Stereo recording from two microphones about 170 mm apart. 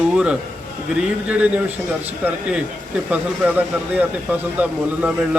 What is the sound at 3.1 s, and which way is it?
A man's voice, 10° right (ahead or behind).